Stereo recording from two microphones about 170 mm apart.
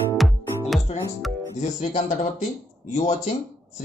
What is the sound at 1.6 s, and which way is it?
Speech, 45° left (ahead or behind).